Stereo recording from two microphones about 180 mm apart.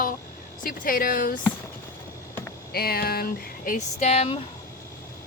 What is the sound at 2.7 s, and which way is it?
Speech, 60° left (ahead or behind).